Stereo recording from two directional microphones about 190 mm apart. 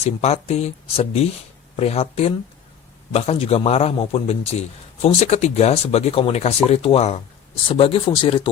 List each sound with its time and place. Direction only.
0.0 s speech: 35° left (ahead or behind)